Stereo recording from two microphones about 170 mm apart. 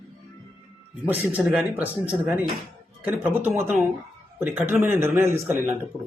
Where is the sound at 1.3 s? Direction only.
5° right (ahead or behind).